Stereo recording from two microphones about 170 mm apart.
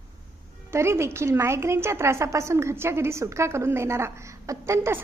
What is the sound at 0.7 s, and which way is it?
A woman's voice, 15° right (ahead or behind).